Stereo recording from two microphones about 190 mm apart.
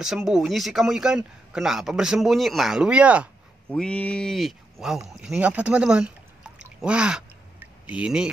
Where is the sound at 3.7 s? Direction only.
5° left (ahead or behind).